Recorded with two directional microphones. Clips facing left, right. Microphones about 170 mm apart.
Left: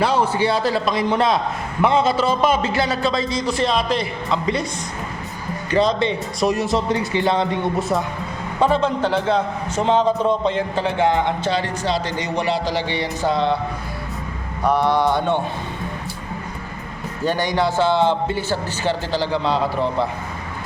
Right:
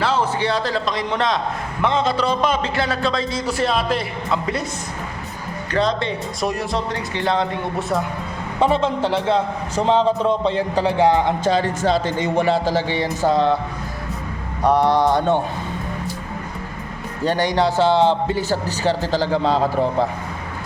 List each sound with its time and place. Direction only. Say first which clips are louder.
0.0 s a man's voice: left 2 dB; 10° left (ahead or behind); by 4.6 s 5° right (ahead or behind)
5.7 s a man's voice: left 3 dB; centre (ahead or behind)
8.6 s a man's voice: even; 25° right (ahead or behind); by 13.6 s 40° right (ahead or behind)
14.6 s a man's voice: right 2 dB; 35° right (ahead or behind)
17.2 s a man's voice: right 2 dB; 35° right (ahead or behind)